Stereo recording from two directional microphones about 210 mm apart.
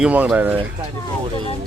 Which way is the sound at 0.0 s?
5° right (ahead or behind).